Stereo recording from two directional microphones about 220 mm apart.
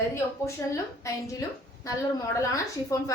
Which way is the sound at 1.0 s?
15° left (ahead or behind).